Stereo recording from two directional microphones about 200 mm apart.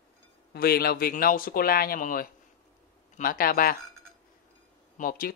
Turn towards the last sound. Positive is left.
turn(degrees=45)  # may be behind; listen again after turning